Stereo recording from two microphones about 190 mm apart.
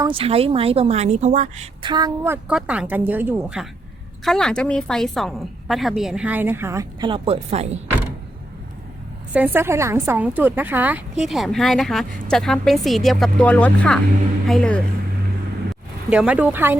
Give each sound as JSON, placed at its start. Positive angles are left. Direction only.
{"t": 0.0, "sound": "speech", "side_deg": -30}
{"t": 1.8, "sound": "a woman's voice", "side_deg": -20}
{"t": 9.3, "sound": "a woman's voice", "side_deg": -10}
{"t": 16.0, "sound": "a woman's voice", "side_deg": -5}